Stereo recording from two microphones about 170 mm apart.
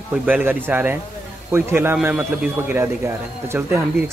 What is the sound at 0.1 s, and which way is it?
A man's voice, 10° right (ahead or behind).